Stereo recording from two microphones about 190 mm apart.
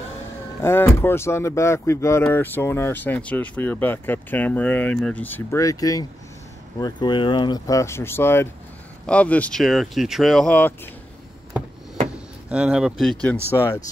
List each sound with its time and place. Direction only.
0.6 s speech: 10° left (ahead or behind)
12.4 s speech: 5° right (ahead or behind)
13.5 s speech: 15° left (ahead or behind)